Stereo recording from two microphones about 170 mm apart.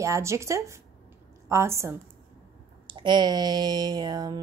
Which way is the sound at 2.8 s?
25° right (ahead or behind).